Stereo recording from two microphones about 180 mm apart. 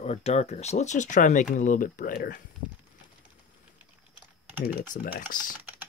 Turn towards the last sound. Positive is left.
turn(degrees=50)  # may be behind; listen again after turning